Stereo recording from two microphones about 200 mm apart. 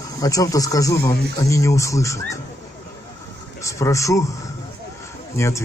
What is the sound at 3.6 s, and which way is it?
Speech, 15° left (ahead or behind).